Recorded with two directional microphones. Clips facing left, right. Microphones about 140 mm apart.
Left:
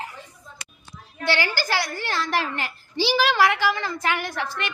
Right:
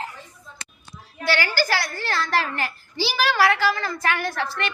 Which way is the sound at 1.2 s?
20° left (ahead or behind).